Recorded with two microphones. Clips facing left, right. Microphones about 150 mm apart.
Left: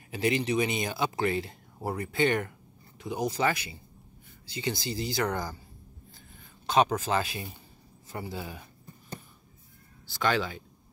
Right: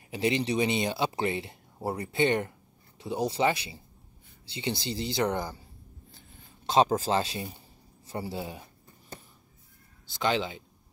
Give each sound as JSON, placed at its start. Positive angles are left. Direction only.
{"t": 0.1, "sound": "speech", "side_deg": -25}
{"t": 6.6, "sound": "speech", "side_deg": -30}
{"t": 10.0, "sound": "speech", "side_deg": -20}